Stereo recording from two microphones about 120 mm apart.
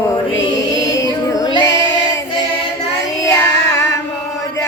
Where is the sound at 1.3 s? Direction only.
35° left (ahead or behind).